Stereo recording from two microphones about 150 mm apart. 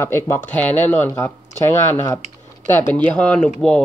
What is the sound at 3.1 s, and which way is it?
Speech, 5° left (ahead or behind).